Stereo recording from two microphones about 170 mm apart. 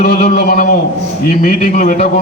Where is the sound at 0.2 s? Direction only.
60° left (ahead or behind).